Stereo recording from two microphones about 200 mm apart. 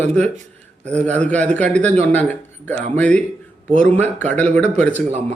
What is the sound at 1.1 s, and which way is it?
A man's voice, 5° left (ahead or behind).